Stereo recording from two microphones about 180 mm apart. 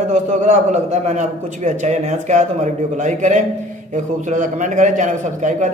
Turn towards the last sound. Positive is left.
turn(degrees=-40)  # may be behind; listen again after turning